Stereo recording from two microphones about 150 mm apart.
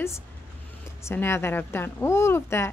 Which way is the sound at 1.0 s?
15° left (ahead or behind).